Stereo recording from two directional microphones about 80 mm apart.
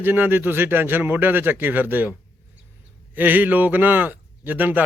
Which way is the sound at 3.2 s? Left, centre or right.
Right.